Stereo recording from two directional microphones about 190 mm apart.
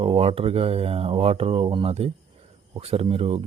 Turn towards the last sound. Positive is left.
turn(degrees=-30)  # may be behind; listen again after turning